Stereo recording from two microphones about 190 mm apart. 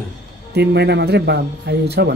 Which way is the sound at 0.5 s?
60° right (ahead or behind).